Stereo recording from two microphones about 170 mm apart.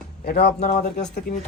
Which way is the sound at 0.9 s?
50° left (ahead or behind).